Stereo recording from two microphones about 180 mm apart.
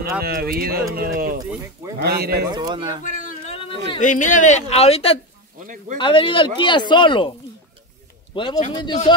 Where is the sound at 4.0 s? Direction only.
45° left (ahead or behind); by 7.3 s 25° left (ahead or behind).